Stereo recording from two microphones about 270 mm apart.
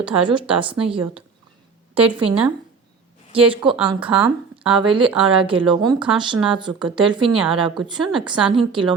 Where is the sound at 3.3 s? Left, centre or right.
Centre.